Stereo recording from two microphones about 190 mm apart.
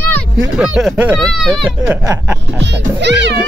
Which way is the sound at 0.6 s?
5° right (ahead or behind).